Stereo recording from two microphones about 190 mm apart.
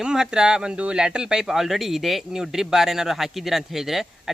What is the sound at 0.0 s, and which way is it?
Speech, 5° right (ahead or behind).